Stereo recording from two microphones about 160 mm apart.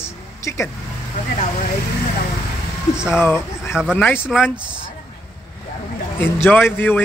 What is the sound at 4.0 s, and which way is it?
Speech, 10° left (ahead or behind).